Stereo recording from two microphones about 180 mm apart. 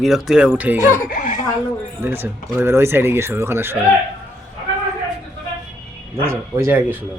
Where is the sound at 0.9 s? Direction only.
50° left (ahead or behind).